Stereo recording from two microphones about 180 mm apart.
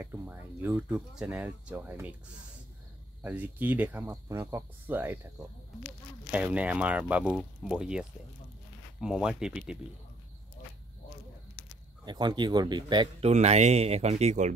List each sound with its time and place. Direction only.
0.0 s speech: 10° right (ahead or behind)
3.2 s speech: 10° right (ahead or behind)
6.3 s speech: 10° right (ahead or behind)
12.0 s speech: 25° right (ahead or behind)
13.3 s speech: 40° right (ahead or behind)